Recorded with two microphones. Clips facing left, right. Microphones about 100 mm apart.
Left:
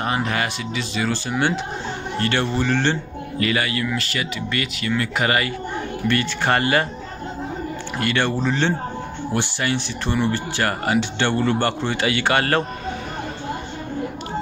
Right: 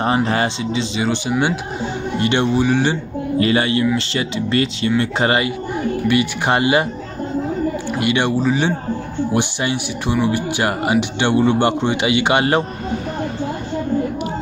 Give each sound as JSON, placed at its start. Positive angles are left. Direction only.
{"t": 0.0, "sound": "speech", "side_deg": -30}
{"t": 3.3, "sound": "speech", "side_deg": -30}
{"t": 6.0, "sound": "speech", "side_deg": -15}
{"t": 8.0, "sound": "speech", "side_deg": -15}
{"t": 9.3, "sound": "speech", "side_deg": -20}